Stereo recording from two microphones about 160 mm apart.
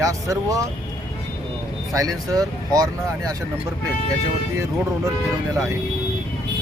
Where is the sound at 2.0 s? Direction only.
25° right (ahead or behind).